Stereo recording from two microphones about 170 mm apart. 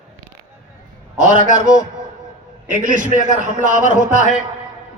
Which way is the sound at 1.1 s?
50° right (ahead or behind).